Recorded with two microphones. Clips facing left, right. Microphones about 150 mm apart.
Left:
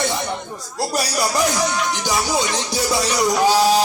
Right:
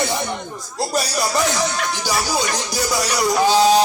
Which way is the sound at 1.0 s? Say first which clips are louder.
Even; 10° left (ahead or behind).